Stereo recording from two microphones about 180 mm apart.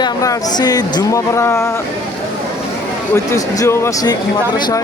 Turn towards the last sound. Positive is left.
turn(degrees=15)  # may be behind; listen again after turning